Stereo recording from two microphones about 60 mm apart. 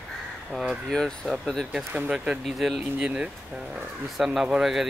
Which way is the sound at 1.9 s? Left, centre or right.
Centre.